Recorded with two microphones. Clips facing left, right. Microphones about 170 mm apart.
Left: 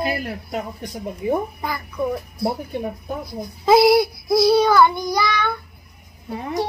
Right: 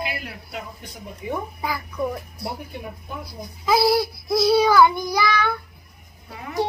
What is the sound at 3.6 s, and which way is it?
Speech, 25° left (ahead or behind).